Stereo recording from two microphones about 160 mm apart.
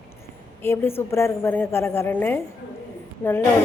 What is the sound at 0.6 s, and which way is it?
A woman's voice, 15° left (ahead or behind).